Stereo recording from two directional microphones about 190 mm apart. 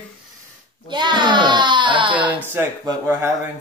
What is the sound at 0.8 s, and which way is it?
A child's voice, 25° right (ahead or behind).